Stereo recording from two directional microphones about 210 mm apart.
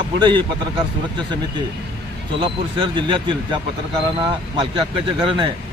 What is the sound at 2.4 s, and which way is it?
Speech, 25° right (ahead or behind).